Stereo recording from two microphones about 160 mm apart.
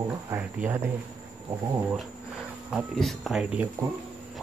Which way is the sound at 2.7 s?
Centre (ahead or behind).